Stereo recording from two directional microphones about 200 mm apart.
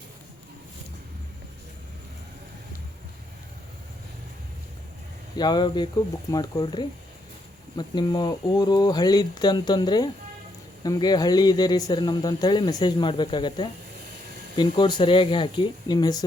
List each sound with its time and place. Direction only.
5.4 s speech: 20° left (ahead or behind)